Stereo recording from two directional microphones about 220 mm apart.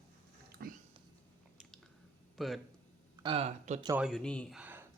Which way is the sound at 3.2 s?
25° right (ahead or behind).